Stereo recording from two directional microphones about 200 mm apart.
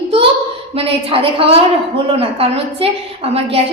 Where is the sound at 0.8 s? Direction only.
25° right (ahead or behind).